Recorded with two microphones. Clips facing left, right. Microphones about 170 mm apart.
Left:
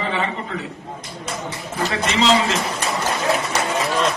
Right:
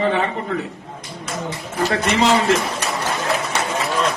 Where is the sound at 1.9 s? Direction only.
50° right (ahead or behind).